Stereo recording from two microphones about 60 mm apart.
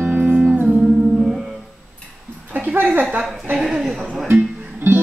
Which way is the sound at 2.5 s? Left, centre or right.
Right.